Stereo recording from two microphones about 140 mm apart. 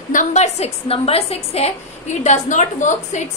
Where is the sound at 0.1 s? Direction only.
60° left (ahead or behind).